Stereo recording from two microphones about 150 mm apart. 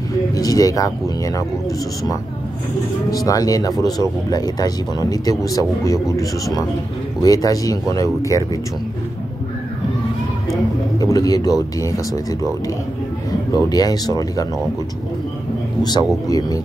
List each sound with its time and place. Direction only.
0.4 s speech: 25° left (ahead or behind)
3.1 s speech: 25° left (ahead or behind)
11.0 s speech: 25° left (ahead or behind)
13.6 s speech: 25° left (ahead or behind)
15.8 s speech: 30° left (ahead or behind)